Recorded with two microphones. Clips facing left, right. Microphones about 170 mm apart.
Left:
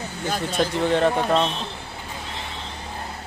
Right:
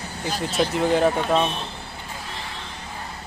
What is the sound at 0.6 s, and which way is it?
Speech, centre (ahead or behind).